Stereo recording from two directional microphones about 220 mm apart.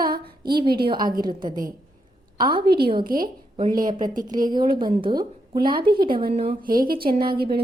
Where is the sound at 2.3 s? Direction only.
20° right (ahead or behind).